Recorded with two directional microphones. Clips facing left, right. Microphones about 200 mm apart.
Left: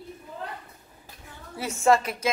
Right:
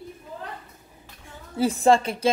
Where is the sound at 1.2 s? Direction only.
30° right (ahead or behind).